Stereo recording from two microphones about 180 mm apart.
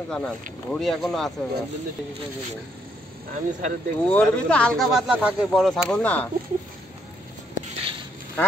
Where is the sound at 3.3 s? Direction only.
45° right (ahead or behind).